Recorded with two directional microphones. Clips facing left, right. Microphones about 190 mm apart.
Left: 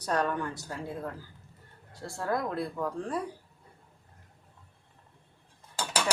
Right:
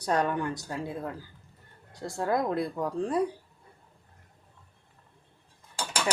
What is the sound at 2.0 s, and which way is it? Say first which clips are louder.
Speech: right 4 dB; 20° right (ahead or behind).